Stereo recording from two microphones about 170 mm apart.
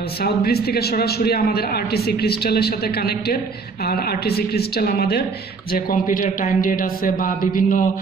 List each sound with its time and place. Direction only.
0.2 s a man's voice: 65° left (ahead or behind)